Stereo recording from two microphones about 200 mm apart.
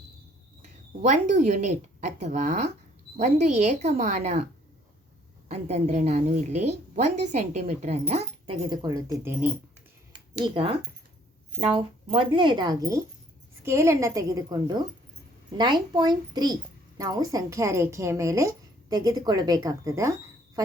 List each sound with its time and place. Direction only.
1.0 s a woman's voice: 40° right (ahead or behind)
5.5 s a woman's voice: 35° right (ahead or behind); by 9.5 s 10° right (ahead or behind)
10.1 s a sound: 25° right (ahead or behind)
11.6 s a woman's voice: 30° right (ahead or behind)